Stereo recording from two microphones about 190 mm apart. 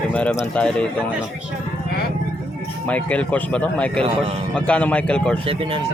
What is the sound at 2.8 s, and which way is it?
Speech, 5° left (ahead or behind).